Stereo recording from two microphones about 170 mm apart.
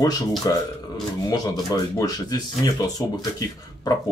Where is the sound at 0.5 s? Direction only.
20° left (ahead or behind).